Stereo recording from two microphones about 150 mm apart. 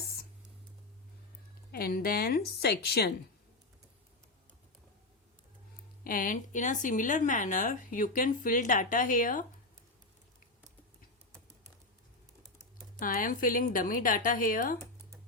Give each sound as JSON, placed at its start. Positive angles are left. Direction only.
{"t": 1.7, "sound": "a woman's voice", "side_deg": 80}
{"t": 6.1, "sound": "speech", "side_deg": 65}
{"t": 13.0, "sound": "speech", "side_deg": 65}